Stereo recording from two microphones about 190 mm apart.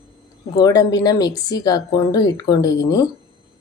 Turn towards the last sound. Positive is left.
turn(degrees=20)  # may be behind; listen again after turning